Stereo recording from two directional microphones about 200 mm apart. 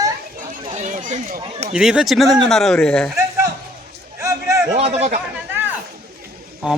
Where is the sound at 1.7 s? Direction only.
5° right (ahead or behind).